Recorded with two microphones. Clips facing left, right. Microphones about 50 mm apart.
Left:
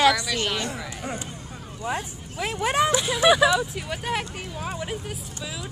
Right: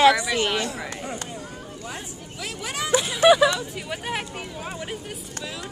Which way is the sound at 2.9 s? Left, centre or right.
Centre.